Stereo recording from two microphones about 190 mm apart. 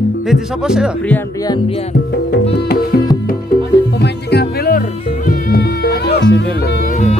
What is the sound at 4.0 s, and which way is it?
Music, 55° left (ahead or behind).